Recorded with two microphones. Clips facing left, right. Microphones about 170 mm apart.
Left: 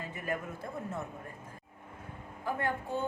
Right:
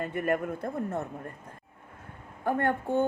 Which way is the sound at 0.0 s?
60° right (ahead or behind).